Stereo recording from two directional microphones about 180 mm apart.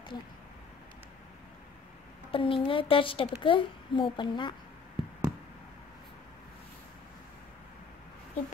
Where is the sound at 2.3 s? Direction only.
30° left (ahead or behind).